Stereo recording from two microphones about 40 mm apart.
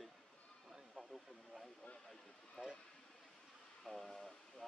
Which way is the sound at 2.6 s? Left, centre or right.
Left.